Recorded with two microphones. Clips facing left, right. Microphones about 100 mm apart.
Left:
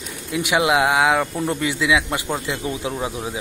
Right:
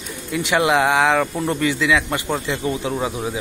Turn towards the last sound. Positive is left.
turn(degrees=0)  # may be behind; listen again after turning